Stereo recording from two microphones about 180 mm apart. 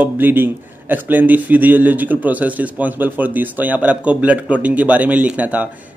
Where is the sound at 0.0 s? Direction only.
10° right (ahead or behind).